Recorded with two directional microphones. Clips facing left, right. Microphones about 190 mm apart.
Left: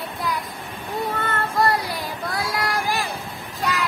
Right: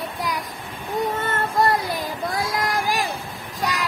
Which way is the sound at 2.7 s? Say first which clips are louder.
Right 1 dB; 15° right (ahead or behind).